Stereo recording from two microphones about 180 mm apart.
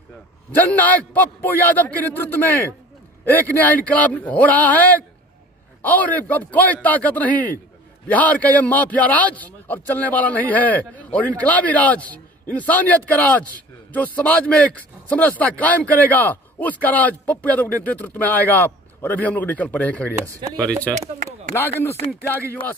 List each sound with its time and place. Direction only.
0.5 s a man's voice: 10° left (ahead or behind)
20.2 s speech: 20° right (ahead or behind)
20.6 s a man's voice: 5° left (ahead or behind)